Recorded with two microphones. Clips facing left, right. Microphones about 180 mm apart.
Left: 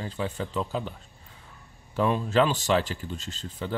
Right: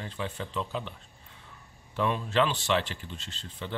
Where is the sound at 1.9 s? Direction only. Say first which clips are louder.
Left 4 dB; 40° left (ahead or behind).